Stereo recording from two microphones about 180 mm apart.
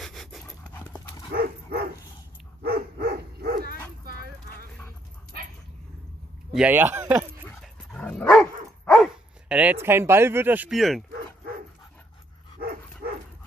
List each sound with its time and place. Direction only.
0.0 s dog: centre (ahead or behind)
1.3 s dog: 55° right (ahead or behind)
4.0 s clip-clop: 60° right (ahead or behind)
6.5 s speech: 10° right (ahead or behind)
7.4 s dog: 5° left (ahead or behind)
8.9 s speech: centre (ahead or behind)